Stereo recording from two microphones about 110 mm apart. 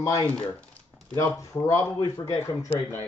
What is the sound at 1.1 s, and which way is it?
Speech, 30° left (ahead or behind).